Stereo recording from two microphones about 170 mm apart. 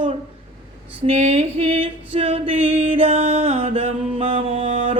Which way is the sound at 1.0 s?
40° right (ahead or behind).